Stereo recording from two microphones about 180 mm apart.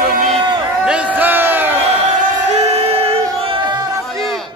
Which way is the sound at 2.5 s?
35° right (ahead or behind).